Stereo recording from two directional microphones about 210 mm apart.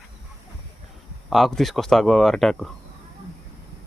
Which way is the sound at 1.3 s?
Centre (ahead or behind).